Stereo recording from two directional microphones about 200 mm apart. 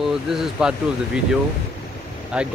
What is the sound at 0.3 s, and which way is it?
Speech, centre (ahead or behind).